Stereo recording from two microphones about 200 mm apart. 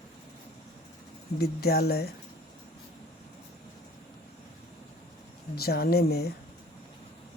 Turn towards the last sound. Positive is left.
turn(degrees=50)  # may be behind; listen again after turning